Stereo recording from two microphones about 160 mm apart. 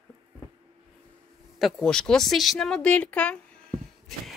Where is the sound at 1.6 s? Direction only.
5° left (ahead or behind).